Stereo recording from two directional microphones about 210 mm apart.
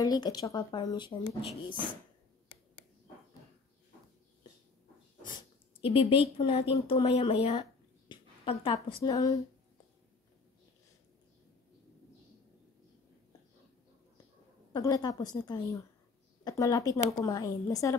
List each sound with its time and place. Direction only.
0.0 s speech: 20° left (ahead or behind)
5.9 s speech: 25° left (ahead or behind)
8.1 s a sound: 25° left (ahead or behind)
9.0 s a woman's voice: 15° left (ahead or behind)
14.7 s a woman's voice: 20° left (ahead or behind)